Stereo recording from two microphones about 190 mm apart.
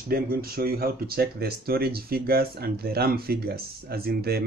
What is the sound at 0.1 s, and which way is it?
Speech, 50° right (ahead or behind).